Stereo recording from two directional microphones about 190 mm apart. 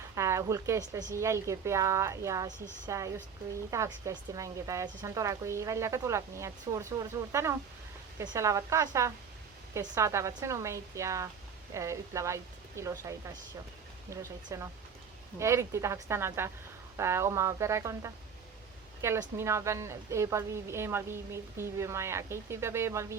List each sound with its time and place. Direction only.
0.2 s a woman's voice: 15° right (ahead or behind)
14.1 s a woman's voice: 15° right (ahead or behind)